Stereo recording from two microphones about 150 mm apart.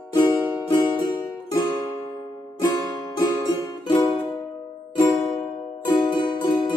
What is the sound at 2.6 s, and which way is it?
Music, 25° left (ahead or behind).